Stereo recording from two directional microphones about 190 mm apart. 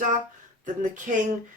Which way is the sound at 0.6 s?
40° right (ahead or behind).